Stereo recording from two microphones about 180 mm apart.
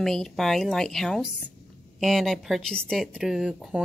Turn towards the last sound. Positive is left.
turn(degrees=-5)  # may be behind; listen again after turning